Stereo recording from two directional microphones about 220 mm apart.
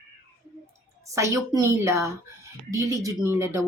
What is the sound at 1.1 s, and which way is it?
Speech, 15° right (ahead or behind).